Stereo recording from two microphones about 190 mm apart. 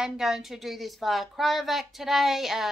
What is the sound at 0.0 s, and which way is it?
Speech, centre (ahead or behind).